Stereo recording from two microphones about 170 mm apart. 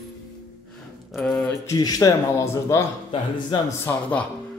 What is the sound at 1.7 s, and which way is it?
A man's voice, 20° left (ahead or behind).